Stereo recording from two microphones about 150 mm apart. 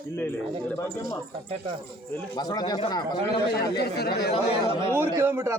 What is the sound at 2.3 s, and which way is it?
Speech, 25° left (ahead or behind).